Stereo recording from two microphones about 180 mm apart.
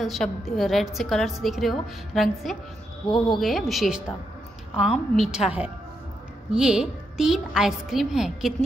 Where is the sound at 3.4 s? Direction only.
Centre (ahead or behind).